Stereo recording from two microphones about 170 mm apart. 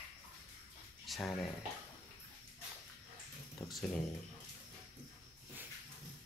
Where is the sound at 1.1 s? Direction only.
Centre (ahead or behind).